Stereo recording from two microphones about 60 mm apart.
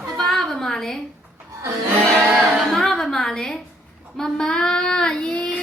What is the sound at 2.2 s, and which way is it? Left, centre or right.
Music, centre.